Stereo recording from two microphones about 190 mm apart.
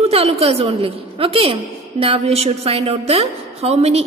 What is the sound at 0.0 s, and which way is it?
A woman's voice, 35° right (ahead or behind).